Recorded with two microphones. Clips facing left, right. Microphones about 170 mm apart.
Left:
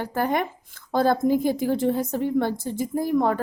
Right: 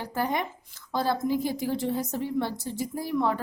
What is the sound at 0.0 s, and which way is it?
A woman's voice, 55° left (ahead or behind).